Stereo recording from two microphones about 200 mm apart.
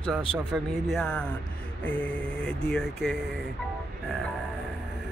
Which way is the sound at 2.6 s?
5° left (ahead or behind).